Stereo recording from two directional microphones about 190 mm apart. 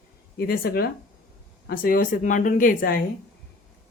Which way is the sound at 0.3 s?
50° left (ahead or behind).